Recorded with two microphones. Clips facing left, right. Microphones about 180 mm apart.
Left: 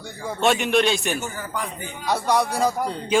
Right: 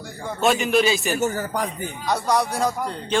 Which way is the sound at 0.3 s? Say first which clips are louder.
Even; centre (ahead or behind).